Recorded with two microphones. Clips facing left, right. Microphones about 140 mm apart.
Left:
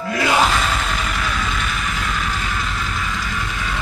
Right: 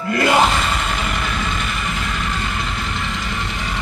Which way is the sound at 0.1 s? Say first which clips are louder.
Right 3 dB; 65° right (ahead or behind).